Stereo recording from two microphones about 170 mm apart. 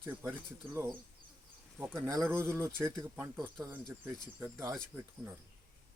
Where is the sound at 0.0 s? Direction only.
15° right (ahead or behind).